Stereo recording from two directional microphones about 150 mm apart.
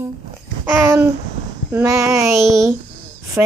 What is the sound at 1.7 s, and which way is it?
Child singing, 20° right (ahead or behind).